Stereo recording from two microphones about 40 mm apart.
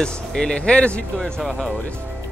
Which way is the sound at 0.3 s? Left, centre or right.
Centre.